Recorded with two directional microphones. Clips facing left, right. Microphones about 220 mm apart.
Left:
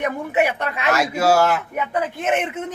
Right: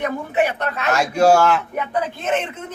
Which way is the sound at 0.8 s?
5° left (ahead or behind).